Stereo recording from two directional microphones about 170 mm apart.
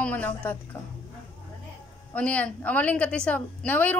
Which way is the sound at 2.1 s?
10° left (ahead or behind).